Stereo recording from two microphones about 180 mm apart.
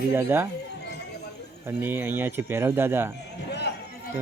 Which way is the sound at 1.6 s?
10° right (ahead or behind).